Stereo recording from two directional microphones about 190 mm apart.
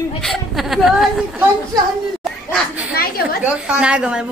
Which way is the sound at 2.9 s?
50° left (ahead or behind).